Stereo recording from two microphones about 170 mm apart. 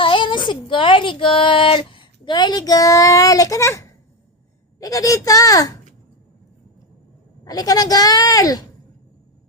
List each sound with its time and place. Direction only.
0.0 s speech: 30° left (ahead or behind)
7.4 s speech: 20° left (ahead or behind)